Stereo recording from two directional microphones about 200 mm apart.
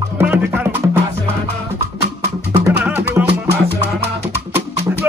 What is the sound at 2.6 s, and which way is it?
Music, 10° right (ahead or behind).